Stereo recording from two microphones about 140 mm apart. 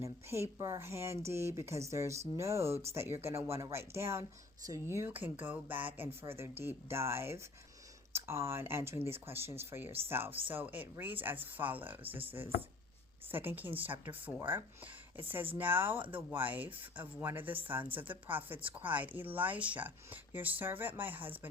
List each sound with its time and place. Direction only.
0.0 s speech: 20° right (ahead or behind)
13.3 s speech: 15° right (ahead or behind)